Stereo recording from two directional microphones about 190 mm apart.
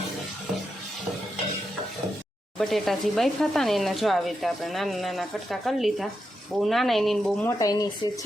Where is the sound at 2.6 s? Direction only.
Centre (ahead or behind).